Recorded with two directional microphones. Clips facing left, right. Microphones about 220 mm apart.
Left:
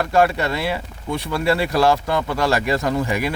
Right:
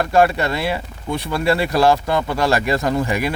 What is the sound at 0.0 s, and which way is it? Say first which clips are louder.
Speech: right 2 dB; 40° right (ahead or behind).